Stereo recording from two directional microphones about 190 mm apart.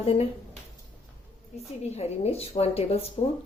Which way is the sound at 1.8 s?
35° left (ahead or behind).